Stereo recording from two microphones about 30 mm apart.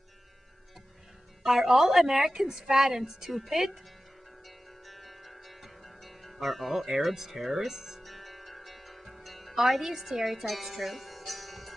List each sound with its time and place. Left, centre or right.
1.4 s a woman's voice: centre
3.3 s a woman's voice: centre
4.8 s music: centre
8.0 s music: centre
9.6 s speech: centre